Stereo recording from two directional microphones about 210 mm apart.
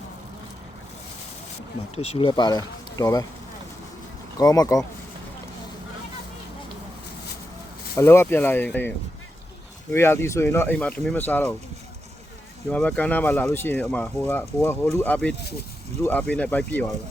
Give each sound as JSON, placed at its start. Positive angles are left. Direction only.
{"t": 2.0, "sound": "speech", "side_deg": 25}
{"t": 4.4, "sound": "speech", "side_deg": 15}
{"t": 7.9, "sound": "speech", "side_deg": 10}
{"t": 9.9, "sound": "speech", "side_deg": 10}
{"t": 12.7, "sound": "speech", "side_deg": 5}